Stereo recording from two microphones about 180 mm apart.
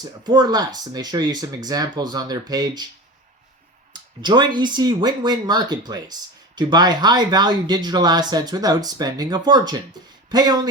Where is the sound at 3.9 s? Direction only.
25° right (ahead or behind).